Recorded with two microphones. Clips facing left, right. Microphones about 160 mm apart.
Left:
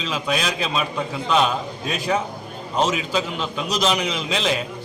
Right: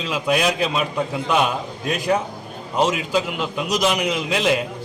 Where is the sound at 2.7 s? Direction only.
5° right (ahead or behind).